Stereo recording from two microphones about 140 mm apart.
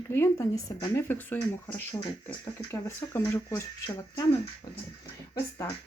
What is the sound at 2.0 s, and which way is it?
Speech, 30° left (ahead or behind).